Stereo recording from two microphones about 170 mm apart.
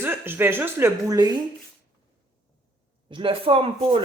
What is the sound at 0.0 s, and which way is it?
Speech, 15° right (ahead or behind).